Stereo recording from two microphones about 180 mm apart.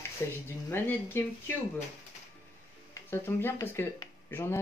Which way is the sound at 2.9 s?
15° left (ahead or behind).